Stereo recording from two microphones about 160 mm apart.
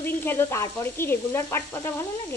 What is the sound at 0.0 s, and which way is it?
Speech, 15° left (ahead or behind).